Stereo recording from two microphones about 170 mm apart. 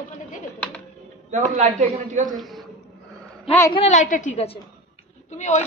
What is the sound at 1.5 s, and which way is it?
Speech, 45° right (ahead or behind).